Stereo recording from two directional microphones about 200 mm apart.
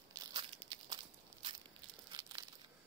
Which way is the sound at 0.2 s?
20° right (ahead or behind).